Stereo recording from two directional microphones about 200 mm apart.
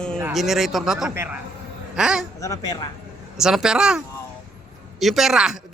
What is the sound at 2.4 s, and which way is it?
Speech, 15° left (ahead or behind).